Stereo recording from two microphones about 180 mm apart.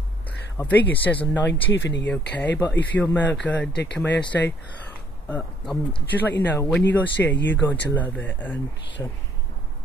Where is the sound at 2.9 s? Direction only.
10° left (ahead or behind).